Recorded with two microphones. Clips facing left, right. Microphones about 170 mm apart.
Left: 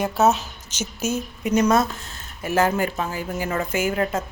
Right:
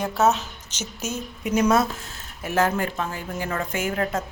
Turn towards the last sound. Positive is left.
turn(degrees=0)  # may be behind; listen again after turning